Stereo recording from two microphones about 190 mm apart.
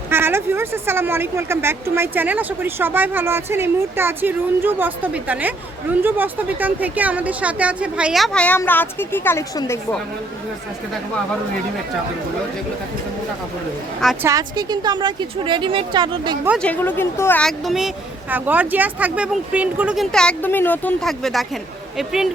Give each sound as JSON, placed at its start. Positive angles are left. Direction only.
{"t": 0.1, "sound": "a woman's voice", "side_deg": -10}
{"t": 14.0, "sound": "speech", "side_deg": 0}
{"t": 14.3, "sound": "a woman's voice", "side_deg": -20}
{"t": 16.6, "sound": "speech", "side_deg": 10}